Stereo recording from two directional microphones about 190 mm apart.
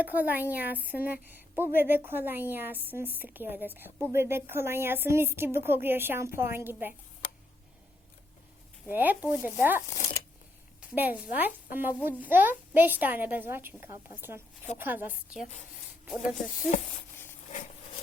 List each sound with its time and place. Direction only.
0.0 s a woman's voice: 10° right (ahead or behind)
8.9 s a woman's voice: 10° right (ahead or behind)